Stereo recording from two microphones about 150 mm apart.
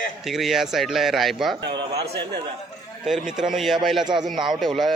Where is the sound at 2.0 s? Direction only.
90° right.